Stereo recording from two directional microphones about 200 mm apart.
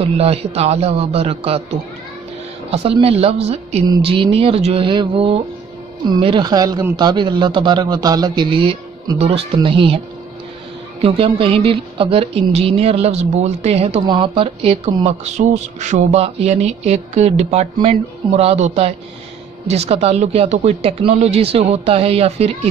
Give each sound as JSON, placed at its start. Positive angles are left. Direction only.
{"t": 0.0, "sound": "a man's voice", "side_deg": -30}
{"t": 11.0, "sound": "speech", "side_deg": -25}